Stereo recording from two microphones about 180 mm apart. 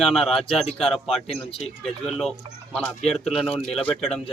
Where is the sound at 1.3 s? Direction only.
35° left (ahead or behind).